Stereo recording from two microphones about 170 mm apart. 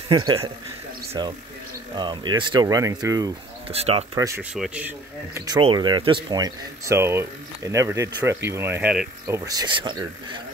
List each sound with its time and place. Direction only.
0.1 s speech: 20° right (ahead or behind)
3.6 s speech: 35° right (ahead or behind)
4.4 s speech: 5° right (ahead or behind)
5.5 s speech: 30° right (ahead or behind)